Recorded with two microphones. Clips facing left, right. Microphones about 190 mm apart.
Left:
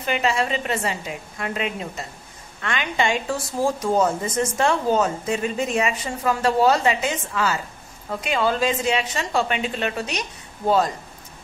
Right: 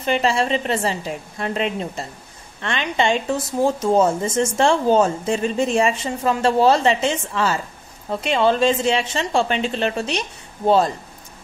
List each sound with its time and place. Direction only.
0.0 s a woman's voice: 30° right (ahead or behind)